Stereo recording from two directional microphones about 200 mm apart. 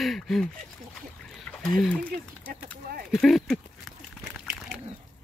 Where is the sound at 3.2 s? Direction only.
Centre (ahead or behind).